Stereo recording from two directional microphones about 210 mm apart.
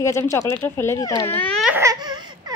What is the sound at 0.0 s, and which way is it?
Speech, 15° left (ahead or behind).